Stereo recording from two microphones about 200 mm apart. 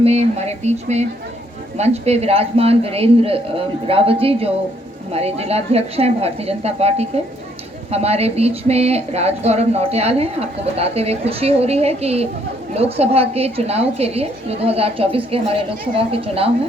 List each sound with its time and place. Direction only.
0.0 s speech: 30° right (ahead or behind)